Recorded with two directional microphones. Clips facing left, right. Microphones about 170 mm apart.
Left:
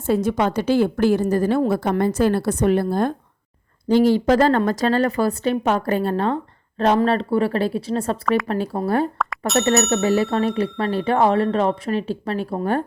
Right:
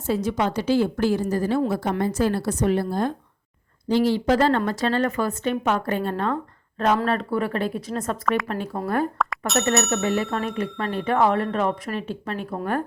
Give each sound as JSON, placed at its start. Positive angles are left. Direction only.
{"t": 0.1, "sound": "a woman's voice", "side_deg": 55}
{"t": 9.2, "sound": "bicycle bell", "side_deg": 0}
{"t": 9.7, "sound": "speech", "side_deg": 0}
{"t": 10.2, "sound": "speech", "side_deg": 35}